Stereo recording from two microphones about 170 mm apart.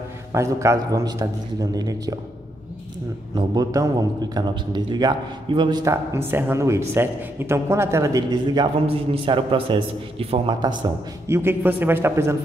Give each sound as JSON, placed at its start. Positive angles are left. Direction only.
{"t": 0.3, "sound": "a man's voice", "side_deg": -15}
{"t": 3.3, "sound": "a man's voice", "side_deg": -20}
{"t": 11.2, "sound": "a man's voice", "side_deg": -15}